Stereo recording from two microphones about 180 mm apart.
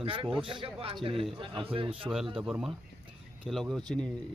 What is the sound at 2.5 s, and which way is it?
Speech, centre (ahead or behind).